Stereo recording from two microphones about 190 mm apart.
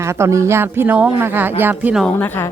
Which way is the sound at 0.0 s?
15° right (ahead or behind).